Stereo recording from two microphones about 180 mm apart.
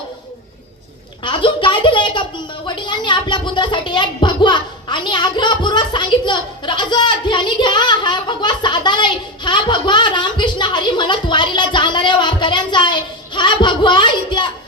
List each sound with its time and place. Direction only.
1.2 s a woman's voice: 30° left (ahead or behind)